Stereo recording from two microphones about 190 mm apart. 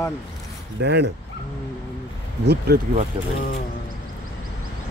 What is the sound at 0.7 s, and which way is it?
Speech, 65° right (ahead or behind).